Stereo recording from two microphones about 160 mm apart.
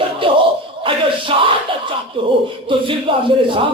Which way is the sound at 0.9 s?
30° right (ahead or behind).